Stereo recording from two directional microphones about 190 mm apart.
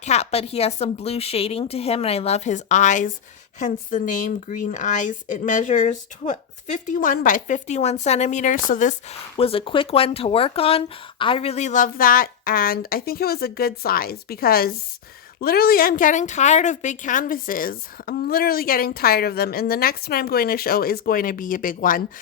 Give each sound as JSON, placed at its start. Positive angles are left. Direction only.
{"t": 0.0, "sound": "speech", "side_deg": 35}
{"t": 9.4, "sound": "a woman's voice", "side_deg": 30}